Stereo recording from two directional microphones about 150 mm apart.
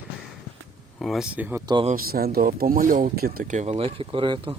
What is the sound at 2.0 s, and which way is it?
Speech, 85° right.